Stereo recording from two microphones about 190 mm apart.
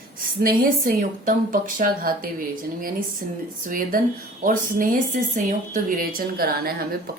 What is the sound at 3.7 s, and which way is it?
Speech, 45° right (ahead or behind).